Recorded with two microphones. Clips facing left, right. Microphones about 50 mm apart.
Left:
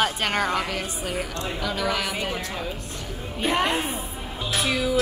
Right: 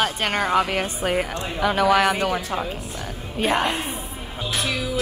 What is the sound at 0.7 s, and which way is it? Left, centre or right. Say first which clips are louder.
A woman's voice: right 6 dB; right.